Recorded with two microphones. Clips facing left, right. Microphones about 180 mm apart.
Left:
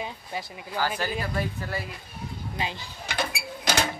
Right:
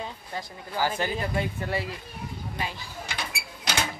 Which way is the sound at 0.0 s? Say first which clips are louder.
Left 1 dB; 15° left (ahead or behind).